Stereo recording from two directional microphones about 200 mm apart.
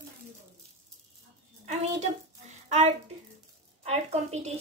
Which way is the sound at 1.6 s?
35° right (ahead or behind).